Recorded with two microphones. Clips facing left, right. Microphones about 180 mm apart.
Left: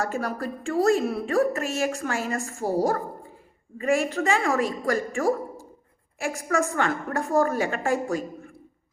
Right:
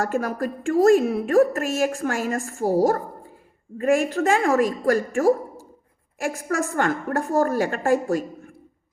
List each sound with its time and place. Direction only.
0.0 s a woman's voice: 45° right (ahead or behind)